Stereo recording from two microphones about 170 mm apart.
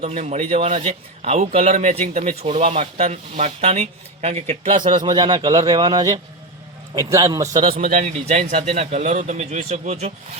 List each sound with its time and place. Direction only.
0.0 s speech: 40° right (ahead or behind)
5.0 s a man's voice: 25° right (ahead or behind)
7.8 s speech: 40° right (ahead or behind)